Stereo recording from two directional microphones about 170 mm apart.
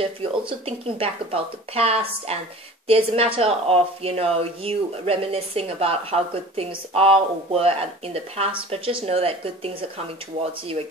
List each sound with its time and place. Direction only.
0.0 s speech: 35° right (ahead or behind)